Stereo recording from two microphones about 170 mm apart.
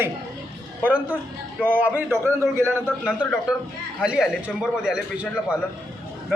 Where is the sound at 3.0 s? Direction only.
5° right (ahead or behind).